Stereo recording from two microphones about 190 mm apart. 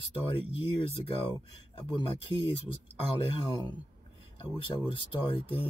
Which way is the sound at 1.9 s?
30° left (ahead or behind).